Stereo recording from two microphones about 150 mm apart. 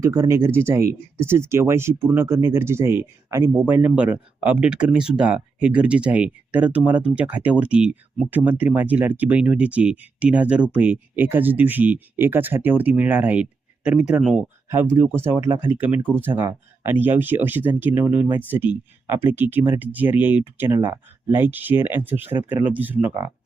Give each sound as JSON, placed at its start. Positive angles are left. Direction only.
{"t": 0.0, "sound": "speech", "side_deg": -20}
{"t": 14.7, "sound": "speech", "side_deg": -15}